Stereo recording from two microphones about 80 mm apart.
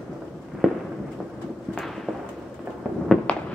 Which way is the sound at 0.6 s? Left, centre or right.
Centre.